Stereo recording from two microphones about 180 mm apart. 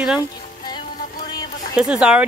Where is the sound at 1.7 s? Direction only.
5° right (ahead or behind).